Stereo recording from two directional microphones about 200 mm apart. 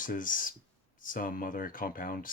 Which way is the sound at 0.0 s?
40° left (ahead or behind).